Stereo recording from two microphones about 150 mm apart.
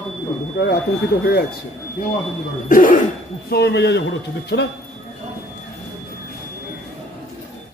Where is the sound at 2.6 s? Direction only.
65° left (ahead or behind).